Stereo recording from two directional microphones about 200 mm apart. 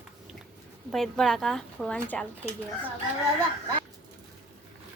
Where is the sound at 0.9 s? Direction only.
Centre (ahead or behind).